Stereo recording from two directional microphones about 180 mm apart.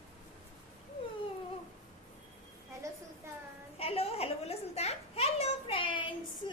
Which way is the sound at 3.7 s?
35° left (ahead or behind).